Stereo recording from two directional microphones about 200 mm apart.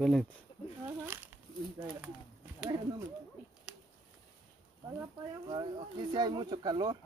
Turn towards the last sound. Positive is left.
turn(degrees=-20)  # may be behind; listen again after turning